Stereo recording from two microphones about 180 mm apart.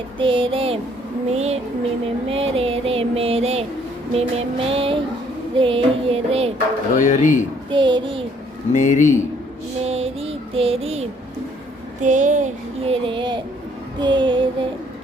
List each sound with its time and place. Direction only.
0.2 s a sound: 30° right (ahead or behind)
6.9 s speech: 45° left (ahead or behind)
7.7 s a child's voice: 25° right (ahead or behind)
8.7 s speech: 45° left (ahead or behind)
9.8 s child singing: 35° right (ahead or behind)
11.9 s a sound: 45° right (ahead or behind); by 13.4 s 25° right (ahead or behind)
14.0 s a child's voice: 25° right (ahead or behind)